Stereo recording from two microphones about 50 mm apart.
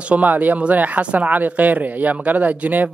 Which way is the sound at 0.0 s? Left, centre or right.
Right.